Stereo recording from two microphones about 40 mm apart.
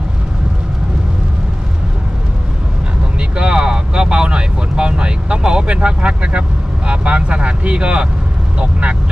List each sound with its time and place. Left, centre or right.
3.2 s vehicle: right
6.9 s speech: right